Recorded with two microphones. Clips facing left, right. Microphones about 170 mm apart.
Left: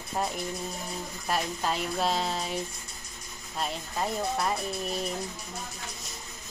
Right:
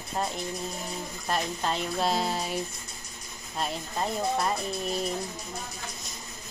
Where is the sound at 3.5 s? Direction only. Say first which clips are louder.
Right 1 dB; centre (ahead or behind).